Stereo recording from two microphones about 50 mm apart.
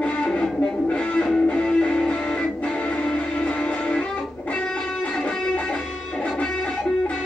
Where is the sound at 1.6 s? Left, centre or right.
Centre.